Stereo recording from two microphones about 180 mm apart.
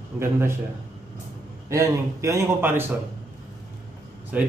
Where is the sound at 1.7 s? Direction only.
15° right (ahead or behind).